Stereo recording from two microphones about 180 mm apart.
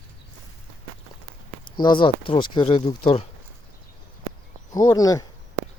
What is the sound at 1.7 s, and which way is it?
Speech, 25° left (ahead or behind).